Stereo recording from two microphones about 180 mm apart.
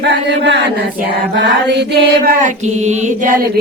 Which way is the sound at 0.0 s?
75° right (ahead or behind).